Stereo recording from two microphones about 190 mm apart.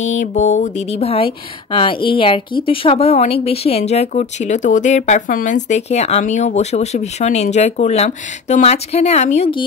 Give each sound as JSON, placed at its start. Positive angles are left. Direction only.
{"t": 0.0, "sound": "speech", "side_deg": 40}